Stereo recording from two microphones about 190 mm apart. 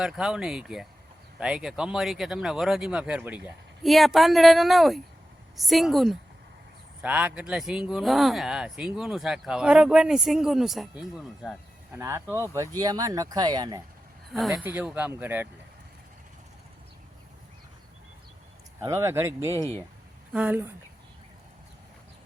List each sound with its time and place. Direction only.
0.0 s speech: 5° right (ahead or behind)
11.9 s speech: 15° right (ahead or behind)
14.5 s speech: 10° right (ahead or behind)
18.8 s speech: 15° right (ahead or behind)